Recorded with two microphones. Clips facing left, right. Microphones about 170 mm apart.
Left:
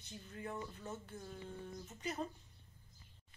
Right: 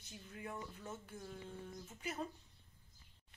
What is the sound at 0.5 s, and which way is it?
Speech, 10° left (ahead or behind).